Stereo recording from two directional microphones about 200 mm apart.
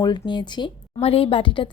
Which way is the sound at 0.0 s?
20° left (ahead or behind).